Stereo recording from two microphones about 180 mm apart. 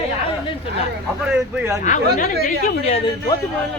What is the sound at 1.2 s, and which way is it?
Speech, 10° right (ahead or behind).